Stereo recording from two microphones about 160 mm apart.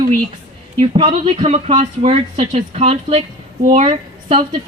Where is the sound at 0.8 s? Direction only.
35° right (ahead or behind).